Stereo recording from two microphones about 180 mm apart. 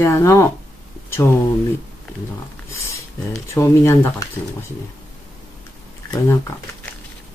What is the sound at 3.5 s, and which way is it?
Speech, 15° left (ahead or behind).